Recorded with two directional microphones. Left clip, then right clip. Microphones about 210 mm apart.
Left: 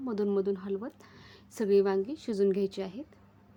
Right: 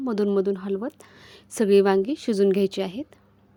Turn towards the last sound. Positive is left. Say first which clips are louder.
# right 8 dB
turn(degrees=-35)  # may be behind; listen again after turning